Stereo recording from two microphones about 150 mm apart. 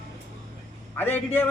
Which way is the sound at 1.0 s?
15° left (ahead or behind).